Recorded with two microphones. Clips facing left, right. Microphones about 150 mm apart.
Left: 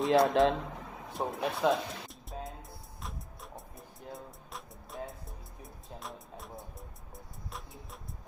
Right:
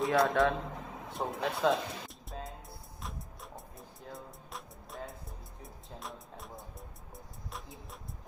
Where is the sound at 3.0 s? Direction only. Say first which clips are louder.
Even; centre (ahead or behind).